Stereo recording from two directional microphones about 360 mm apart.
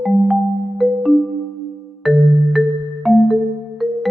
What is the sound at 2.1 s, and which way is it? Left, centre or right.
Music, centre.